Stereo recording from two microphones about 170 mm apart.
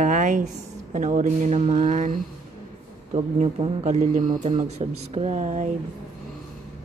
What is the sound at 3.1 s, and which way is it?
Speech, 40° right (ahead or behind).